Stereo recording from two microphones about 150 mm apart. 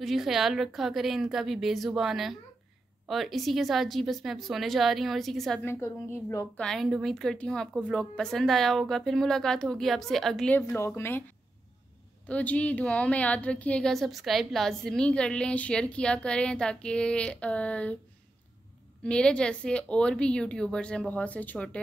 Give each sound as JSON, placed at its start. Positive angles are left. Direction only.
{"t": 0.0, "sound": "a woman's voice", "side_deg": 0}
{"t": 5.6, "sound": "a woman's voice", "side_deg": 15}
{"t": 12.3, "sound": "a woman's voice", "side_deg": 10}
{"t": 19.0, "sound": "a woman's voice", "side_deg": 5}